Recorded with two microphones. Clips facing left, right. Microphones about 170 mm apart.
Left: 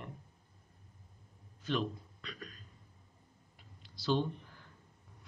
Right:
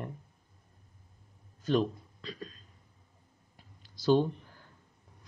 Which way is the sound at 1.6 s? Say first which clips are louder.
Right 7 dB; 35° right (ahead or behind).